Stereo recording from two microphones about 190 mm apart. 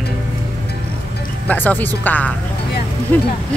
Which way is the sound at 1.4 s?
10° left (ahead or behind).